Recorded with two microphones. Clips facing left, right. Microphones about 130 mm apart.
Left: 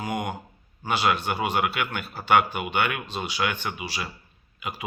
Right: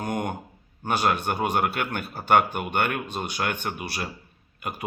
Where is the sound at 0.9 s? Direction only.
50° right (ahead or behind).